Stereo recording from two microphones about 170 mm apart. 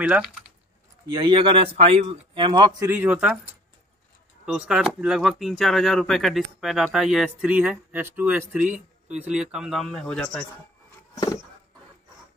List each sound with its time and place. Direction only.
0.0 s speech: 5° right (ahead or behind)
1.0 s speech: 30° right (ahead or behind); by 10.4 s 5° left (ahead or behind)